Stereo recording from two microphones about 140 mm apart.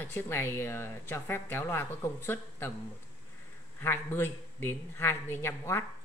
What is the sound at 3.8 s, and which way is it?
Speech, 15° left (ahead or behind).